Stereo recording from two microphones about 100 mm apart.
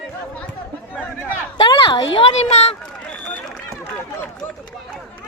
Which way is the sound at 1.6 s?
50° left (ahead or behind).